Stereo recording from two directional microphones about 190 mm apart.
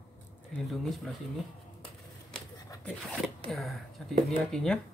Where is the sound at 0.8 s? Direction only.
Centre (ahead or behind).